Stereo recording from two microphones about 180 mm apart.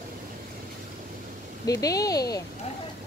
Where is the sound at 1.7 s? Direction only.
20° left (ahead or behind).